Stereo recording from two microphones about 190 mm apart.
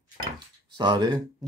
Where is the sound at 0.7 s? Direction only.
20° right (ahead or behind).